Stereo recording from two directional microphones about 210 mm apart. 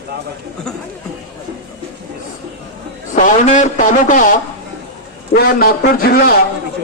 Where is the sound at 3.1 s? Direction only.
35° left (ahead or behind).